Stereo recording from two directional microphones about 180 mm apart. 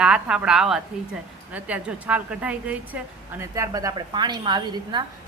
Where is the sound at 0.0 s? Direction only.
5° right (ahead or behind).